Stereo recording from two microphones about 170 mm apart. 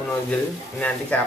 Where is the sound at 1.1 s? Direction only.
10° left (ahead or behind).